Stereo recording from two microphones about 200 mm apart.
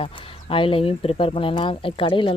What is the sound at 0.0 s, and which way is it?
Speech, 25° left (ahead or behind).